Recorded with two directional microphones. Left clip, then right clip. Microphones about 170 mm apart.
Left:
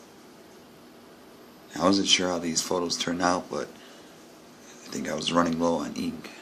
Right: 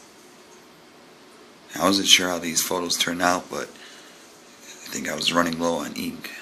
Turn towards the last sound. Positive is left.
turn(degrees=10)  # may be behind; listen again after turning